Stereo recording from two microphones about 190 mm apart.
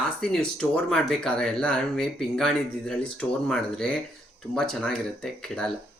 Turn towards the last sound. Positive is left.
turn(degrees=5)  # may be behind; listen again after turning